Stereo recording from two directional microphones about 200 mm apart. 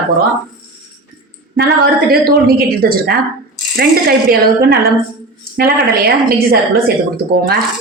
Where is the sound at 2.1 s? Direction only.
50° right (ahead or behind).